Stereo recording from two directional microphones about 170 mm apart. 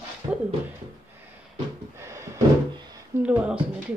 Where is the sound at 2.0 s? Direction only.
15° right (ahead or behind).